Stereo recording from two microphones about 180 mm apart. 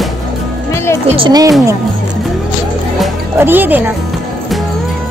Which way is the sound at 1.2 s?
20° right (ahead or behind).